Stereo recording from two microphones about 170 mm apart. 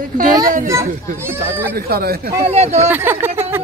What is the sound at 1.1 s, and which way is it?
Speech, 15° right (ahead or behind).